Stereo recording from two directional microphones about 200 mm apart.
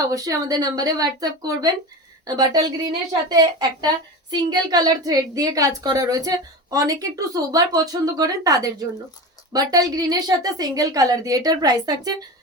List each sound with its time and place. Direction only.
0.1 s a woman's voice: 15° right (ahead or behind)